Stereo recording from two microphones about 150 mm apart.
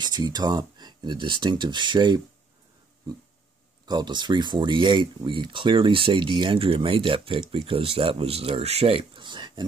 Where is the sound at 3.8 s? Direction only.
30° right (ahead or behind).